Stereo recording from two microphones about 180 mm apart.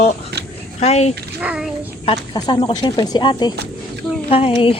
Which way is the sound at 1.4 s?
5° right (ahead or behind).